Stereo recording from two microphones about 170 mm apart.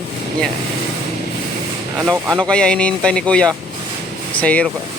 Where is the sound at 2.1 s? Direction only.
20° right (ahead or behind).